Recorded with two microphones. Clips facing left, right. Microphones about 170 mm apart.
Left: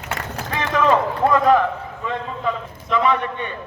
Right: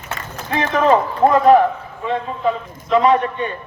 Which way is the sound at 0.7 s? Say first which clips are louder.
Right 2 dB; 40° right (ahead or behind).